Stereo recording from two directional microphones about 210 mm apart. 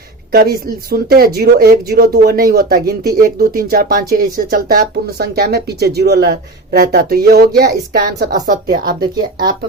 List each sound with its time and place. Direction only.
0.3 s speech: 45° right (ahead or behind)
9.0 s speech: 20° right (ahead or behind)